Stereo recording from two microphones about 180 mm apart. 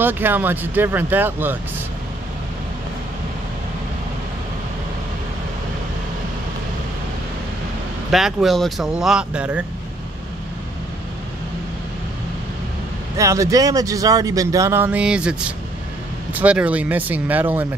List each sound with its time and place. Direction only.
0.0 s speech: 10° right (ahead or behind)
8.1 s speech: centre (ahead or behind)
13.2 s speech: 15° right (ahead or behind)